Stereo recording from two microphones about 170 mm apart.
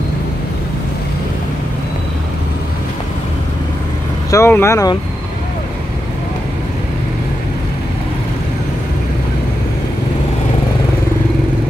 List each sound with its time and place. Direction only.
4.3 s speech: 15° left (ahead or behind)